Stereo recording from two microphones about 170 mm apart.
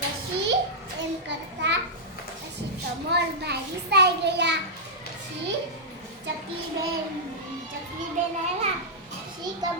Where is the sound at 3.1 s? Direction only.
75° right (ahead or behind).